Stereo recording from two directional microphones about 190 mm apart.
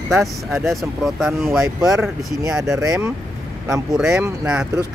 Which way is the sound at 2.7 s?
15° right (ahead or behind).